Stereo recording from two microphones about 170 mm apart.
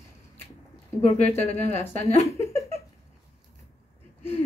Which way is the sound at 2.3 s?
15° left (ahead or behind).